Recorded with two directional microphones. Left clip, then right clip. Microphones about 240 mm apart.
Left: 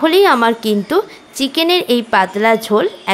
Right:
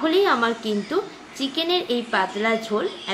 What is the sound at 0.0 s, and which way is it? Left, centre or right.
A woman's voice, left.